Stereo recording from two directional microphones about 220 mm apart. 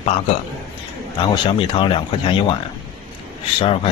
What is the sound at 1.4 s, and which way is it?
Speech, 25° left (ahead or behind).